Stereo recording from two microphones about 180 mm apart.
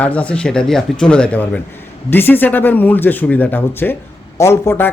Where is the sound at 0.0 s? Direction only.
5° left (ahead or behind).